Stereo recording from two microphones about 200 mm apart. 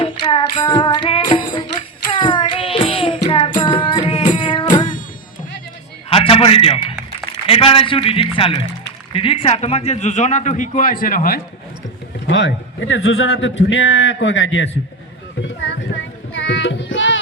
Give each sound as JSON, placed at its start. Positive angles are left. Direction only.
{"t": 0.0, "sound": "child singing", "side_deg": 25}
{"t": 0.5, "sound": "singing", "side_deg": 25}
{"t": 1.3, "sound": "music", "side_deg": 25}
{"t": 6.1, "sound": "a sound", "side_deg": 30}
{"t": 7.4, "sound": "a man's voice", "side_deg": 25}
{"t": 12.3, "sound": "speech", "side_deg": 65}
{"t": 15.4, "sound": "a sound", "side_deg": 65}
{"t": 16.3, "sound": "music", "side_deg": 65}